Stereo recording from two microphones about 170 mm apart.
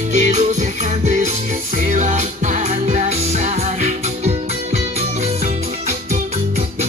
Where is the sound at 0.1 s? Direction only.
45° right (ahead or behind).